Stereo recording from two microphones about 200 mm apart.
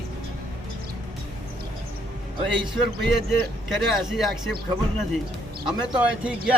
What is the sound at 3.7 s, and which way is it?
Speech, centre (ahead or behind).